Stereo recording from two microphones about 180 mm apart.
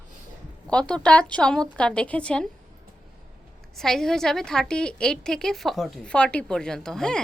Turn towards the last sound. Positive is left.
turn(degrees=5)  # may be behind; listen again after turning